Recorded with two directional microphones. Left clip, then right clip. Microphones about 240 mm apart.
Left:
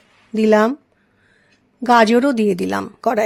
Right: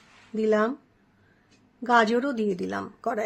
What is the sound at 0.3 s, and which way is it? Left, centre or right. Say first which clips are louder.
Speech: left 9 dB; left.